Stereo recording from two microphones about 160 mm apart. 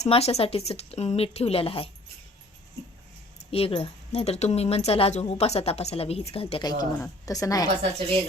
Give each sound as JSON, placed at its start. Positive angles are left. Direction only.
{"t": 0.0, "sound": "speech", "side_deg": 40}
{"t": 3.5, "sound": "speech", "side_deg": 35}
{"t": 6.7, "sound": "a woman's voice", "side_deg": 25}